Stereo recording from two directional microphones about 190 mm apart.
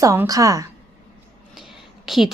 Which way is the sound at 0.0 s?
15° right (ahead or behind).